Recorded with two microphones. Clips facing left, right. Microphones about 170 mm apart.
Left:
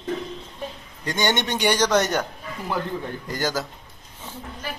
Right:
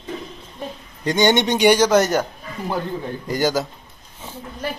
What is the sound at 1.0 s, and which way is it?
A man's voice, 20° right (ahead or behind).